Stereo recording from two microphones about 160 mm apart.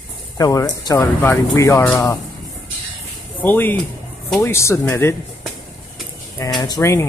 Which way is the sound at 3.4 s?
10° left (ahead or behind).